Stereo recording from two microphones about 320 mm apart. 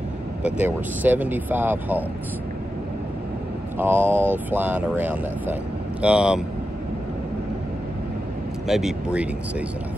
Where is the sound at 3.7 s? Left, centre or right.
Centre.